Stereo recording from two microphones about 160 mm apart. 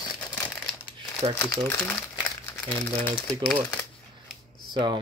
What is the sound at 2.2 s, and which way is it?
Crumpling, 15° left (ahead or behind).